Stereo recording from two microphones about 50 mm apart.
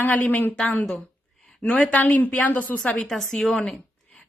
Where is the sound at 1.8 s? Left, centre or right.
Left.